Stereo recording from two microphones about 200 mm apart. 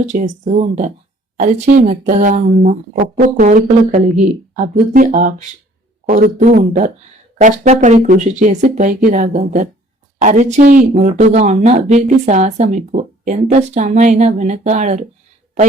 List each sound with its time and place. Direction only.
0.0 s speech: 35° right (ahead or behind)